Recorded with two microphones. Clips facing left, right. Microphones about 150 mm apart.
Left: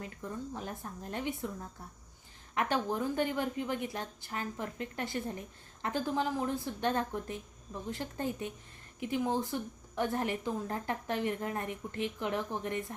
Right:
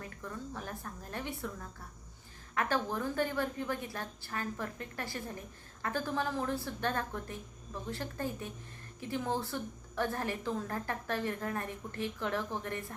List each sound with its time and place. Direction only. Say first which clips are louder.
0.0 s a woman's voice: left 3 dB; 20° left (ahead or behind)
2.6 s a woman's voice: left 1 dB; 15° left (ahead or behind)